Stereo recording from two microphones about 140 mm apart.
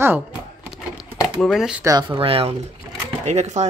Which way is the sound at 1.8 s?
25° right (ahead or behind).